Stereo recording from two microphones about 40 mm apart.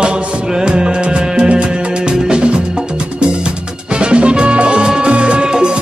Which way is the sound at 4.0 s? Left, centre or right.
Right.